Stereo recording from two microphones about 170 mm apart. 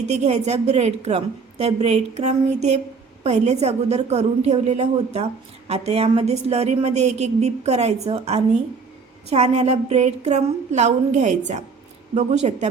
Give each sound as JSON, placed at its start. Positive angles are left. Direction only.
{"t": 0.1, "sound": "a woman's voice", "side_deg": -40}